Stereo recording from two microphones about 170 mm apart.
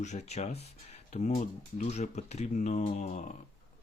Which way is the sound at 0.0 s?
40° left (ahead or behind).